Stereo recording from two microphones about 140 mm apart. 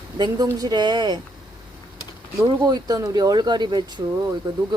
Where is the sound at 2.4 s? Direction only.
30° right (ahead or behind).